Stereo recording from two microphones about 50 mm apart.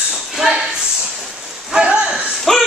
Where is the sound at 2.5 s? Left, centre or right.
Centre.